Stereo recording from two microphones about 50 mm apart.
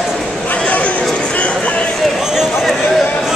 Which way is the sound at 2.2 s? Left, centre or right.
Centre.